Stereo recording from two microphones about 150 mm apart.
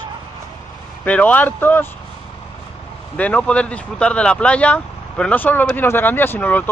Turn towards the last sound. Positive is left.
turn(degrees=10)  # may be behind; listen again after turning